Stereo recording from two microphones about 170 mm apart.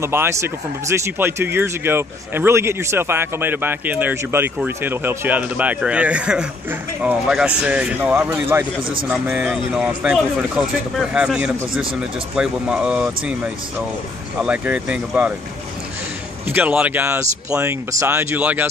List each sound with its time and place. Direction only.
0.0 s speech: 15° right (ahead or behind)
16.4 s speech: 10° right (ahead or behind)